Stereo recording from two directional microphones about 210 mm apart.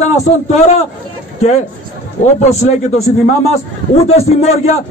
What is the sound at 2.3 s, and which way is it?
A man's voice, 30° left (ahead or behind).